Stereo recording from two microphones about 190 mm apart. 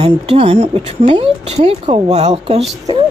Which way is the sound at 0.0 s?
30° right (ahead or behind).